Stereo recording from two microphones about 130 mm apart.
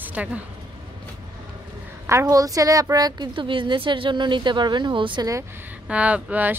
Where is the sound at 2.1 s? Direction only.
25° right (ahead or behind).